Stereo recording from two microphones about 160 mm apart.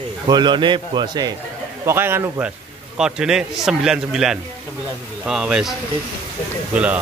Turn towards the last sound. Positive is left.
turn(degrees=-10)  # may be behind; listen again after turning